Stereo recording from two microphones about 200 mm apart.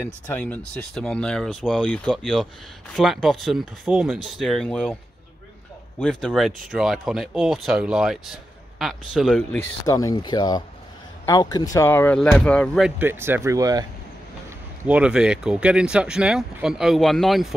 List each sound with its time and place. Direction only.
0.0 s speech: 10° left (ahead or behind)
5.9 s speech: centre (ahead or behind)
9.6 s speech: 15° left (ahead or behind)
13.0 s speech: 10° right (ahead or behind)
14.9 s speech: 5° right (ahead or behind)